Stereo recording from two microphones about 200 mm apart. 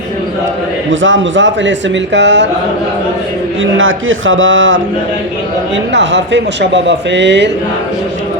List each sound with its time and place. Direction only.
0.9 s speech: 70° right (ahead or behind)
3.6 s speech: 80° right
5.9 s speech: 60° right (ahead or behind)